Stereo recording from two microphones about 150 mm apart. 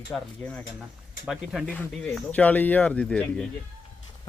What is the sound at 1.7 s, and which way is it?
Speech, 10° left (ahead or behind).